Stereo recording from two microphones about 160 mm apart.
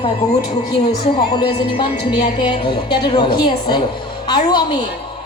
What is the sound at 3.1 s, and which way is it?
A woman's voice, 30° left (ahead or behind).